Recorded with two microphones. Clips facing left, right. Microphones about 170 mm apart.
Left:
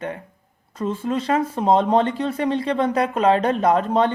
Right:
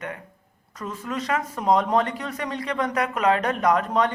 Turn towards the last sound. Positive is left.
turn(degrees=30)  # may be behind; listen again after turning